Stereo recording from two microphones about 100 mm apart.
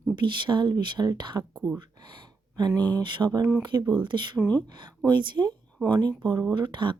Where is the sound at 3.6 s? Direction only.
45° right (ahead or behind).